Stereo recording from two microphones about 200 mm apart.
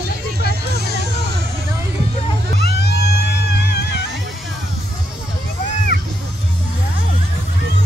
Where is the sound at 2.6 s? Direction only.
55° left (ahead or behind).